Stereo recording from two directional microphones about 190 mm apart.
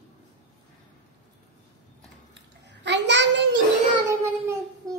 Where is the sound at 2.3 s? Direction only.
65° right (ahead or behind).